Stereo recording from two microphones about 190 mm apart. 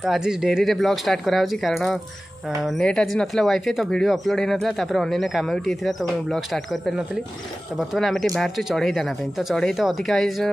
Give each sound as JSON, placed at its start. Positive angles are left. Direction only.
{"t": 0.0, "sound": "speech", "side_deg": -5}